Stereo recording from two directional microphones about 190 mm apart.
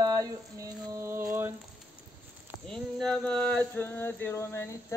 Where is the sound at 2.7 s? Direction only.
5° left (ahead or behind).